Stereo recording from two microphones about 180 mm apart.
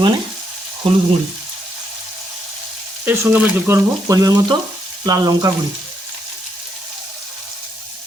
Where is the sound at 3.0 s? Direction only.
10° right (ahead or behind).